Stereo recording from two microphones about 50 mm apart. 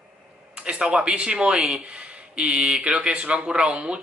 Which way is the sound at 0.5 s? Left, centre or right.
Centre.